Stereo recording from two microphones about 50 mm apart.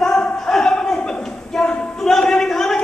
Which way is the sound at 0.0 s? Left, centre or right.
Centre.